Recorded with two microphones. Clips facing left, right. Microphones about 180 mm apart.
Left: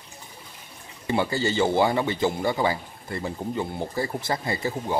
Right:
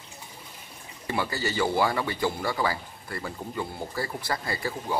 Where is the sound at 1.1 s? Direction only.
25° left (ahead or behind).